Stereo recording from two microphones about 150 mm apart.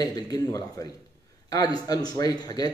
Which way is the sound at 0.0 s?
25° left (ahead or behind).